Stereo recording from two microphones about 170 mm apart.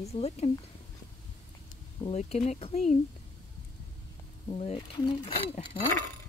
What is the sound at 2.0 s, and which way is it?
Speech, 35° left (ahead or behind).